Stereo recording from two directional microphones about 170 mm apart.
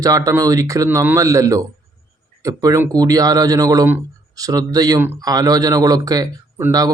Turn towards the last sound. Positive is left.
turn(degrees=-20)  # may be behind; listen again after turning